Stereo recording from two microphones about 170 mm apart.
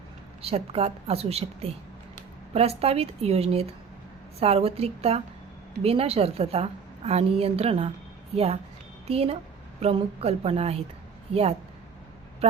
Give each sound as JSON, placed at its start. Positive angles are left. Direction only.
{"t": 0.4, "sound": "a woman's voice", "side_deg": -35}
{"t": 9.0, "sound": "a woman's voice", "side_deg": -35}